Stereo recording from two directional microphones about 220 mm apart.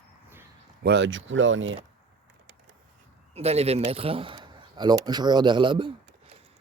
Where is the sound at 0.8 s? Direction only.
50° right (ahead or behind).